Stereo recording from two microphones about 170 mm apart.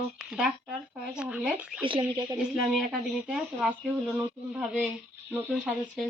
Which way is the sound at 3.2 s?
5° right (ahead or behind).